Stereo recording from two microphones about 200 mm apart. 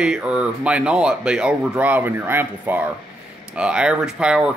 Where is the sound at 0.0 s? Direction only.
5° right (ahead or behind).